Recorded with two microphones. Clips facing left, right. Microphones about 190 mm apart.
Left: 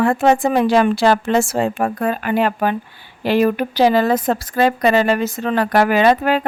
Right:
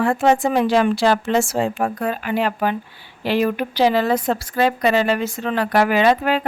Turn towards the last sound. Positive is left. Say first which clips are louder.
# left 2 dB
turn(degrees=50)  # may be behind; listen again after turning